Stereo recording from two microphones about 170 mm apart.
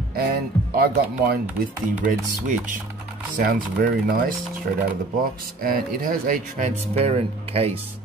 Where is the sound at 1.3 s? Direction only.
60° right (ahead or behind).